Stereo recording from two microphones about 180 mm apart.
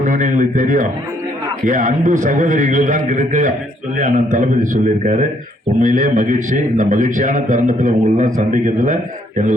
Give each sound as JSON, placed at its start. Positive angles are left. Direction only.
{"t": 0.0, "sound": "a man's voice", "side_deg": -45}